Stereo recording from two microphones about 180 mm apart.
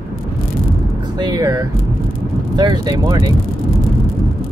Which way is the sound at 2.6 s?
20° right (ahead or behind).